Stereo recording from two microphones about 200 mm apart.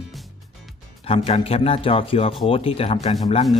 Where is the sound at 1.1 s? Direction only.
30° left (ahead or behind).